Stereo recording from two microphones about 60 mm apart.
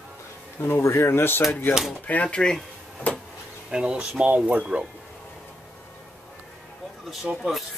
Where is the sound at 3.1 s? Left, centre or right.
Left.